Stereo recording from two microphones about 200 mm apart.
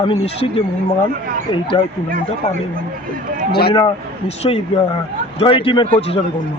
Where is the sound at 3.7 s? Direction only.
25° left (ahead or behind).